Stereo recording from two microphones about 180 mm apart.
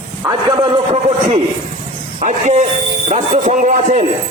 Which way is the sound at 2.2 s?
40° right (ahead or behind).